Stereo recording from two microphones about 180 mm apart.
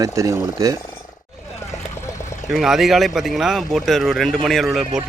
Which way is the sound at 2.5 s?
Centre (ahead or behind).